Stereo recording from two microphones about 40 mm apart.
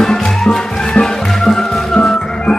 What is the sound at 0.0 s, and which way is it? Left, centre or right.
Music, centre.